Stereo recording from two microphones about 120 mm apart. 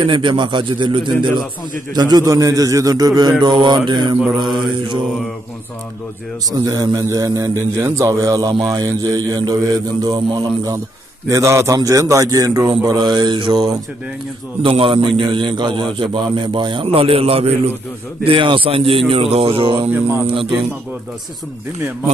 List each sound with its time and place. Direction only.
0.0 s a man's voice: 40° right (ahead or behind)
6.5 s a man's voice: 35° right (ahead or behind)
19.9 s speech: 15° right (ahead or behind)
20.3 s a man's voice: 45° right (ahead or behind)